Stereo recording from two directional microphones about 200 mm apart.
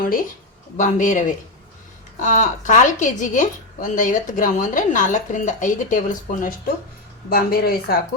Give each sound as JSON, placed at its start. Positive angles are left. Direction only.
{"t": 0.8, "sound": "a woman's voice", "side_deg": 40}